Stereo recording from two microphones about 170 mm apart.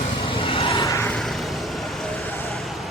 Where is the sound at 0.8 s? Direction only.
15° left (ahead or behind).